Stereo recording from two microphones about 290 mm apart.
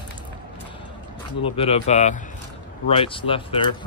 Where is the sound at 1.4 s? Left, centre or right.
Centre.